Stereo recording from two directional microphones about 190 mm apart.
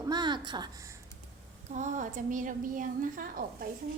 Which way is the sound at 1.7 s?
40° right (ahead or behind).